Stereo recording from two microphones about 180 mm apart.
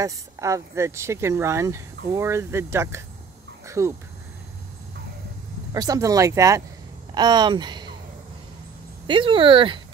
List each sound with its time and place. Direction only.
0.0 s speech: 15° right (ahead or behind)
5.7 s speech: 20° right (ahead or behind)
9.0 s speech: 30° right (ahead or behind)